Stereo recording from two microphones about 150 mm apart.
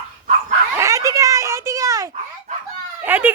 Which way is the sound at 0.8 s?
20° right (ahead or behind).